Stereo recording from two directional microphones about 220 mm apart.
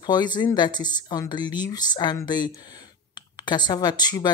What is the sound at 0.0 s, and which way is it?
Speech, 20° left (ahead or behind).